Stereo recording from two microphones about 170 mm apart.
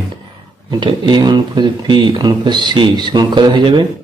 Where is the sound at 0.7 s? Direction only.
25° right (ahead or behind).